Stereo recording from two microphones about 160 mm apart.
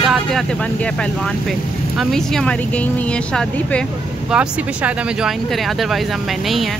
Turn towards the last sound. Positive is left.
turn(degrees=-5)  # may be behind; listen again after turning